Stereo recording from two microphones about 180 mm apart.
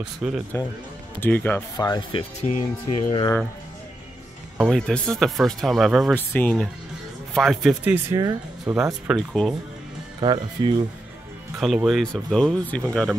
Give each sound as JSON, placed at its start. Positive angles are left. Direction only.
{"t": 0.0, "sound": "speech", "side_deg": -5}
{"t": 1.2, "sound": "speech", "side_deg": 10}
{"t": 1.8, "sound": "speech", "side_deg": 25}
{"t": 2.4, "sound": "speech", "side_deg": 40}
{"t": 4.6, "sound": "speech", "side_deg": 5}
{"t": 6.1, "sound": "speech", "side_deg": 10}
{"t": 8.2, "sound": "speech", "side_deg": -20}
{"t": 8.8, "sound": "speech", "side_deg": -10}
{"t": 9.3, "sound": "speech", "side_deg": 0}
{"t": 10.2, "sound": "speech", "side_deg": -25}
{"t": 11.6, "sound": "speech", "side_deg": 0}